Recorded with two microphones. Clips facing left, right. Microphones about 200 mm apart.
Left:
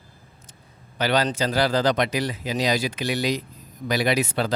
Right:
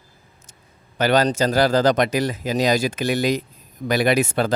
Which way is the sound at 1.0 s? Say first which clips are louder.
Right 5 dB; 45° right (ahead or behind).